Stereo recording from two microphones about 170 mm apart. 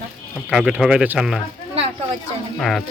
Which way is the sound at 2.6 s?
Centre (ahead or behind).